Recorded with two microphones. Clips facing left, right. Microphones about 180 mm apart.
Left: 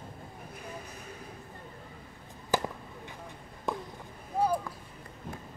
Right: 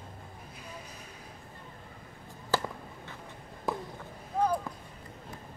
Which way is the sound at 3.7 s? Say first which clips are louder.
Right 1 dB; centre (ahead or behind).